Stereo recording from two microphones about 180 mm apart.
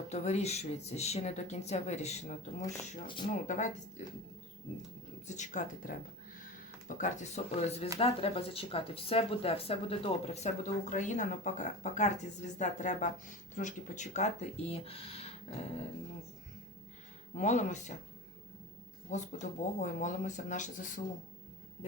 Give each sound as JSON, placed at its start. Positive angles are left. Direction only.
{"t": 0.1, "sound": "speech", "side_deg": 35}
{"t": 5.3, "sound": "speech", "side_deg": 45}
{"t": 17.3, "sound": "speech", "side_deg": 40}
{"t": 19.1, "sound": "speech", "side_deg": 40}